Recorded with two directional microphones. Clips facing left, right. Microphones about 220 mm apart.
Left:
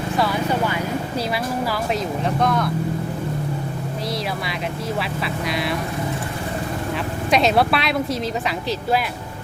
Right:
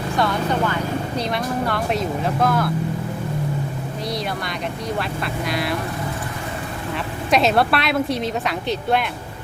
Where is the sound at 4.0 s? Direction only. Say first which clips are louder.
Right 1 dB; centre (ahead or behind).